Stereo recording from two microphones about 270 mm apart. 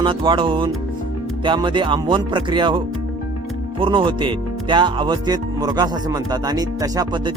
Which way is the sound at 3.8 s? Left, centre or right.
Centre.